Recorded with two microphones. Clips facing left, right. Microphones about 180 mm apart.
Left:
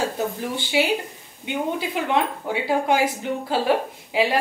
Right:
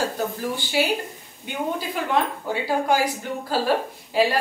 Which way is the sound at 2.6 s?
25° left (ahead or behind).